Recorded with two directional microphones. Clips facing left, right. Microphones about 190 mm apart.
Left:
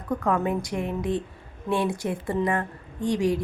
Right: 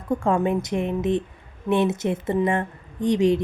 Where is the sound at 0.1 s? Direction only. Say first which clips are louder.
Right 3 dB; 25° right (ahead or behind).